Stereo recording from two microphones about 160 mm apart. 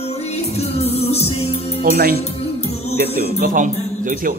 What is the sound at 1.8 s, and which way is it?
Speech, 75° right (ahead or behind).